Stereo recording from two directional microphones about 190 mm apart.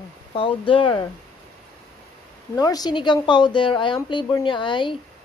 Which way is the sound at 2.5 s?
20° left (ahead or behind).